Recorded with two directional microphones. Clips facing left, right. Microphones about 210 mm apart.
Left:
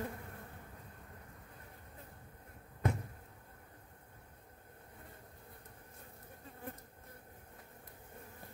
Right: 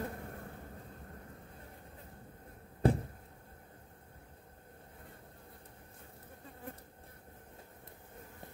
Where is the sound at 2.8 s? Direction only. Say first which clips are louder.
Right 7 dB; 30° right (ahead or behind).